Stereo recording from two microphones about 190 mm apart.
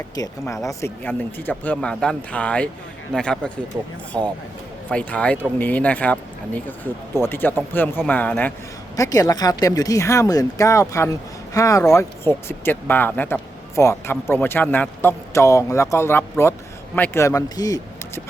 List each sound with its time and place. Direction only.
0.2 s speech: 15° left (ahead or behind)
9.0 s speech: 20° left (ahead or behind)